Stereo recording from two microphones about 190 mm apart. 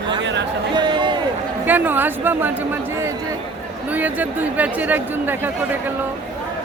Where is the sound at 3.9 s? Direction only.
10° right (ahead or behind).